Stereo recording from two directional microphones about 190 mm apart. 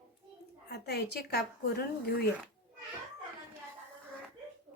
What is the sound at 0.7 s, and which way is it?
A woman's voice, 60° left (ahead or behind).